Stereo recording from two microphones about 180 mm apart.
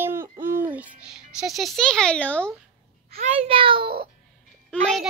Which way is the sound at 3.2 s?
35° right (ahead or behind).